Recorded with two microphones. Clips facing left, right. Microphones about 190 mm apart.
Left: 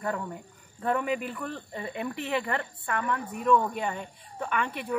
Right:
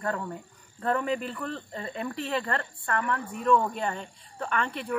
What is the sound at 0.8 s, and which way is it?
Speech, 10° left (ahead or behind).